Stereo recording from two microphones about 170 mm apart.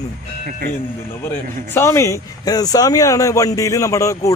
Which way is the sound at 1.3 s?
15° left (ahead or behind).